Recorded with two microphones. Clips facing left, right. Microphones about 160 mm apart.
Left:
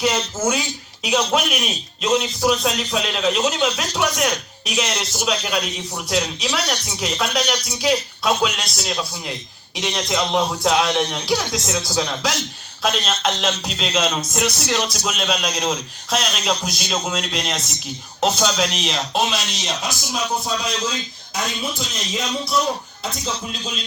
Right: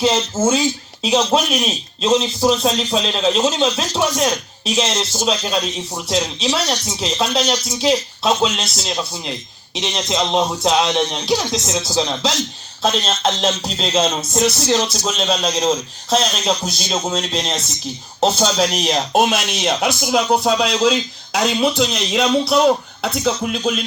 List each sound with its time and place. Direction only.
0.0 s a man's voice: 25° right (ahead or behind); by 23.7 s 65° right (ahead or behind)